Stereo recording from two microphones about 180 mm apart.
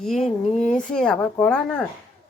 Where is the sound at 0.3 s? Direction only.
40° left (ahead or behind).